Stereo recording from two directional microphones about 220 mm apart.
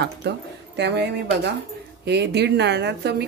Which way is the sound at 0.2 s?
50° right (ahead or behind).